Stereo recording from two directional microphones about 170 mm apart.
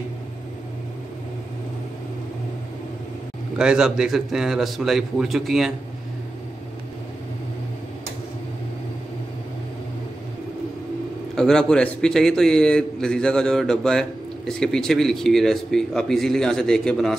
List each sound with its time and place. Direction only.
3.5 s a man's voice: 5° right (ahead or behind)
11.3 s a man's voice: 5° left (ahead or behind)